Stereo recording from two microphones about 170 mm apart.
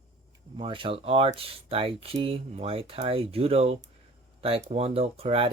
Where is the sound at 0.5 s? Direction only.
30° right (ahead or behind).